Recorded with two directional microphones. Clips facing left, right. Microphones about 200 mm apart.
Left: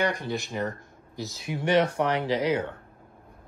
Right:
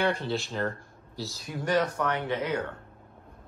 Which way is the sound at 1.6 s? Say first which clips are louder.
Left 4 dB; 25° left (ahead or behind).